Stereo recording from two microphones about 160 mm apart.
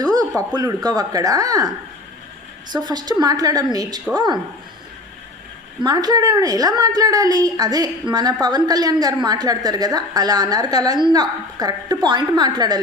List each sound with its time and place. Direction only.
0.0 s a woman's voice: 25° right (ahead or behind)
2.7 s a woman's voice: 25° right (ahead or behind)
5.8 s a woman's voice: 25° right (ahead or behind)